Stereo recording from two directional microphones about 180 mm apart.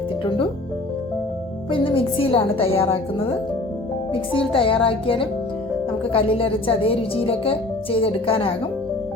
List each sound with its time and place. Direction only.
1.7 s speech: 30° left (ahead or behind)
4.1 s a woman's voice: 30° left (ahead or behind)